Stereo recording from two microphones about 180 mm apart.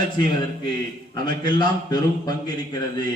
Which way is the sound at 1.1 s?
25° left (ahead or behind).